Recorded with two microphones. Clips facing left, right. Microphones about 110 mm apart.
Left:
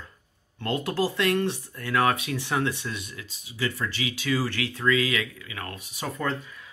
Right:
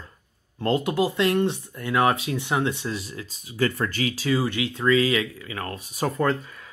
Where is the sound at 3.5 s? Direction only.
50° right (ahead or behind).